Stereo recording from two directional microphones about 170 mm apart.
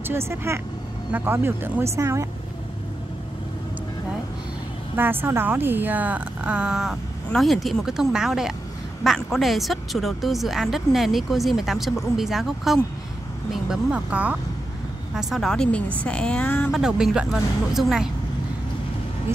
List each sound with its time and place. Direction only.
0.1 s a woman's voice: 15° right (ahead or behind)
4.9 s a woman's voice: 10° right (ahead or behind); by 16.7 s 10° left (ahead or behind)
16.7 s a woman's voice: 5° right (ahead or behind)